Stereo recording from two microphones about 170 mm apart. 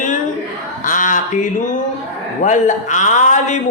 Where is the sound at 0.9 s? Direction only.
50° left (ahead or behind).